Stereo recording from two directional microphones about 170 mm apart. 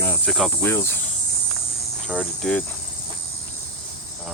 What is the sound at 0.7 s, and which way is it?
Speech, 15° left (ahead or behind).